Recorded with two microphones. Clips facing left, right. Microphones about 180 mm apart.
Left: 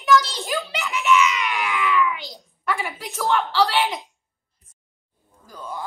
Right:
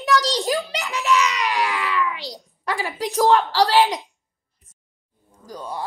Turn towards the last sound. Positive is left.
turn(degrees=-35)  # may be behind; listen again after turning